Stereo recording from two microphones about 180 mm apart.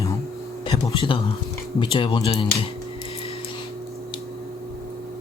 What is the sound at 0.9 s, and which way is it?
Speech, 30° left (ahead or behind).